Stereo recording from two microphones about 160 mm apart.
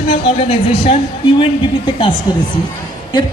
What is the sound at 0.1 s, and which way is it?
Speech, 40° left (ahead or behind).